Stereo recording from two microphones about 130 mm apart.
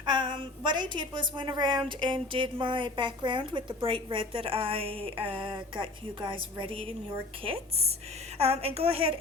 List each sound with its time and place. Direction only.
0.0 s a woman's voice: 35° right (ahead or behind)